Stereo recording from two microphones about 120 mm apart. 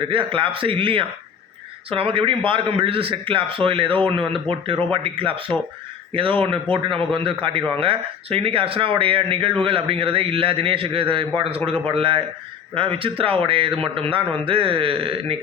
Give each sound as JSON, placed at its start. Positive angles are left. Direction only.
{"t": 0.1, "sound": "a man's voice", "side_deg": -45}
{"t": 6.4, "sound": "a man's voice", "side_deg": -50}